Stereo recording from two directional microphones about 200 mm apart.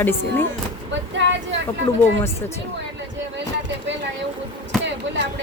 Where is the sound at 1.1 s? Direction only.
65° right (ahead or behind).